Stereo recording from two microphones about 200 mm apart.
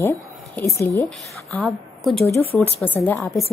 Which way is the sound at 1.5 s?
5° left (ahead or behind).